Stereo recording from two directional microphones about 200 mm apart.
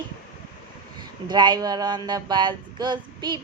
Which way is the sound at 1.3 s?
20° right (ahead or behind).